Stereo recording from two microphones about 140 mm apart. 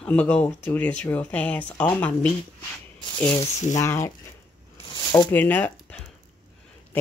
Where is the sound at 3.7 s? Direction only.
20° left (ahead or behind).